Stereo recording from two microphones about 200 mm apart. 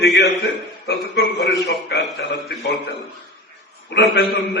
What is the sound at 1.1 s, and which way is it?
A man's voice, 55° left (ahead or behind).